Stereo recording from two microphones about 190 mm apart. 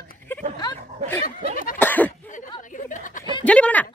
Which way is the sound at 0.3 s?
10° left (ahead or behind).